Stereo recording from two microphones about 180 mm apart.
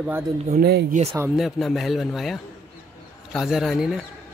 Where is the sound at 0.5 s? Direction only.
60° right (ahead or behind).